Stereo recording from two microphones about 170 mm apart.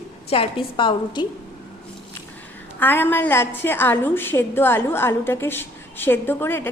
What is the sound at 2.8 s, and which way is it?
A woman's voice, 10° left (ahead or behind).